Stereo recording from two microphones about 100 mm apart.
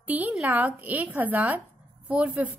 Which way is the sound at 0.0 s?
15° right (ahead or behind).